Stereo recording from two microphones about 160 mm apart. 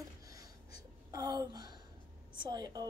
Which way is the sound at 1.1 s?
25° right (ahead or behind).